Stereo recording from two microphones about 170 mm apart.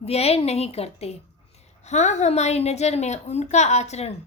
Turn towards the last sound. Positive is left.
turn(degrees=40)  # may be behind; listen again after turning